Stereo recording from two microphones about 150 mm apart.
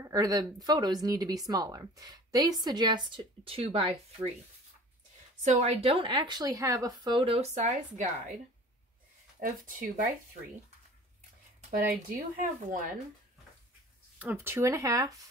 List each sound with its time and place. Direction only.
0.0 s a woman's voice: 25° right (ahead or behind); by 4.3 s 40° right (ahead or behind)
5.4 s a woman's voice: 50° right (ahead or behind)
9.4 s speech: 70° right (ahead or behind)
11.9 s speech: 70° right (ahead or behind)
14.1 s a woman's voice: 15° right (ahead or behind)